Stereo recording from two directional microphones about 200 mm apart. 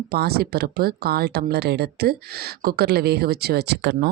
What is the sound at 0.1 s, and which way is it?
Speech, 50° right (ahead or behind).